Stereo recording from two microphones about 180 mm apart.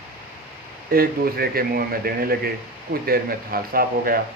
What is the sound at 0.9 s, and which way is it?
Speech, 55° right (ahead or behind).